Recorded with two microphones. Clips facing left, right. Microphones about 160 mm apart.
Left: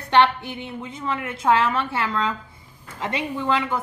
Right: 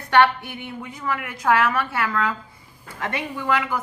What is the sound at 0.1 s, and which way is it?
A woman's voice, 20° left (ahead or behind).